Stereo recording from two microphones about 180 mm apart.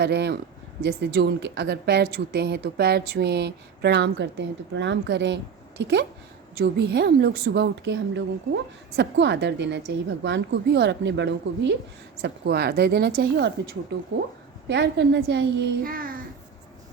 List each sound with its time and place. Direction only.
0.0 s a woman's voice: 65° right (ahead or behind)
12.2 s a woman's voice: 60° right (ahead or behind)
14.7 s speech: 70° right (ahead or behind); by 16.2 s 50° right (ahead or behind)